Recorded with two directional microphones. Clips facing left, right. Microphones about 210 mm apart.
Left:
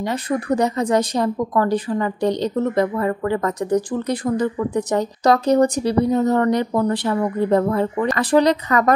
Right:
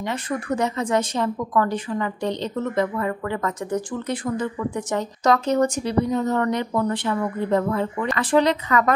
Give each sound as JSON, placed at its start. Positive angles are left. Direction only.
{"t": 0.3, "sound": "a woman's voice", "side_deg": 35}